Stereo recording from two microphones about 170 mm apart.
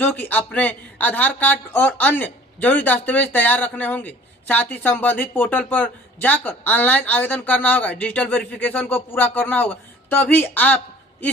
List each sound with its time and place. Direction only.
0.0 s a man's voice: 10° left (ahead or behind)